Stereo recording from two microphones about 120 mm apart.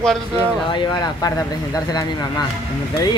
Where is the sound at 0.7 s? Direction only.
35° left (ahead or behind).